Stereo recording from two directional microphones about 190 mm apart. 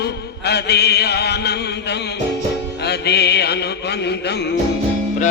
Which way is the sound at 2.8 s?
60° left (ahead or behind).